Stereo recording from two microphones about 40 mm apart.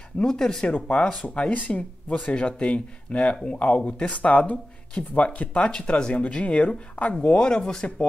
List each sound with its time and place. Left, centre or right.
0.2 s speech: centre
0.7 s speech: left
5.7 s speech: left
7.3 s speech: centre